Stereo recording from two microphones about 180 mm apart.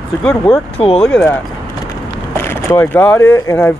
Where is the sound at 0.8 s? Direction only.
35° left (ahead or behind).